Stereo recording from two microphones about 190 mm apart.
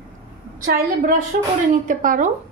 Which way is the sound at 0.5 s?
45° right (ahead or behind).